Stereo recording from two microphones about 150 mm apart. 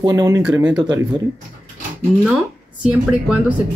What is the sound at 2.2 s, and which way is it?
Speech, centre (ahead or behind).